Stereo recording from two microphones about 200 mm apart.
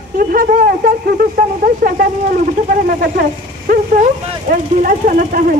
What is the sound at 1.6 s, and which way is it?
Speech, 45° right (ahead or behind).